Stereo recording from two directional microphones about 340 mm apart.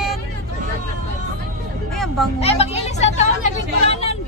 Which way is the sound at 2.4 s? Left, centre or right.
Centre.